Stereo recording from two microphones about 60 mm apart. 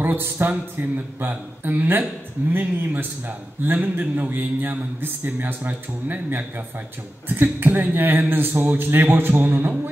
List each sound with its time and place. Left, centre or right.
0.0 s a man's voice: right